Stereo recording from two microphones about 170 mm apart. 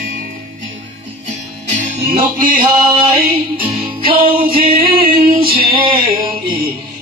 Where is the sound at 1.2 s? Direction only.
45° right (ahead or behind).